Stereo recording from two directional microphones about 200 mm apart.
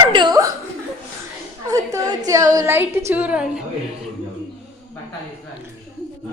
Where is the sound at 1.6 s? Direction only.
15° right (ahead or behind).